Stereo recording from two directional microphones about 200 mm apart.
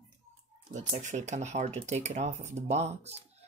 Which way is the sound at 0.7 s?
35° right (ahead or behind).